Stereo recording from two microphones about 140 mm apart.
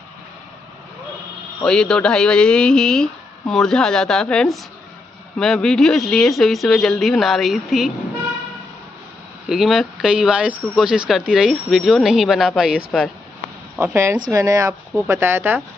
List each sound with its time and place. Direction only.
1.6 s speech: 5° left (ahead or behind)
9.5 s speech: centre (ahead or behind)
13.7 s speech: 20° right (ahead or behind)